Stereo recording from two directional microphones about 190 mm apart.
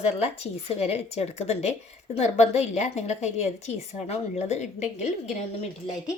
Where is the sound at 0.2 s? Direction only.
35° left (ahead or behind).